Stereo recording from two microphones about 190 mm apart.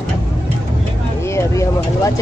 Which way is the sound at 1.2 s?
15° left (ahead or behind).